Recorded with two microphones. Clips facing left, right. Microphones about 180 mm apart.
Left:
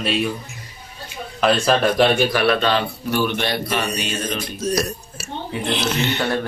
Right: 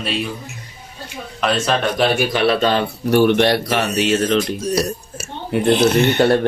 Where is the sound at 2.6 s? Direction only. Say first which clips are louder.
Right 3 dB; 45° right (ahead or behind).